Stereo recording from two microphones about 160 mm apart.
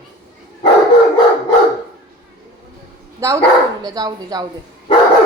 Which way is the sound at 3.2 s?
20° right (ahead or behind).